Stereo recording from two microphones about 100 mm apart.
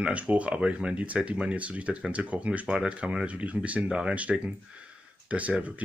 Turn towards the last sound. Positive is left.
turn(degrees=-15)  # may be behind; listen again after turning